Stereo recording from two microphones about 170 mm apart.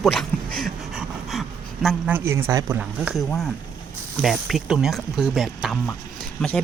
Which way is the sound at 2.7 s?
5° right (ahead or behind).